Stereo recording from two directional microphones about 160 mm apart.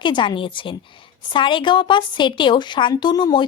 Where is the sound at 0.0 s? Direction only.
30° left (ahead or behind).